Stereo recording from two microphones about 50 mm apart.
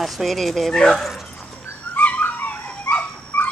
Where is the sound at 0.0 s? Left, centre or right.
Centre.